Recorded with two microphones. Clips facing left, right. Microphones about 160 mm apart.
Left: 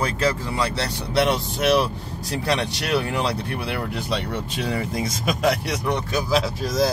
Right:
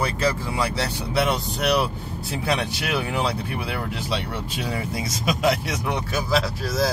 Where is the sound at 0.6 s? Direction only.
10° right (ahead or behind).